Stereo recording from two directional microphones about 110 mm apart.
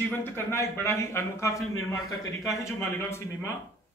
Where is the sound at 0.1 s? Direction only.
20° left (ahead or behind).